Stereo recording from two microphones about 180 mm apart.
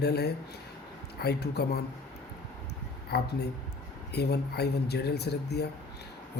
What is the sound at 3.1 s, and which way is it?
Speech, 65° left (ahead or behind).